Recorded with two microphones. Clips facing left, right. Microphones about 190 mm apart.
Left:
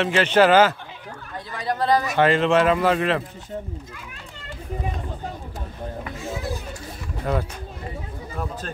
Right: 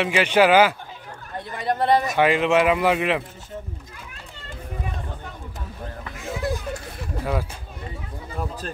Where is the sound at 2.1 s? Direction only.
10° right (ahead or behind).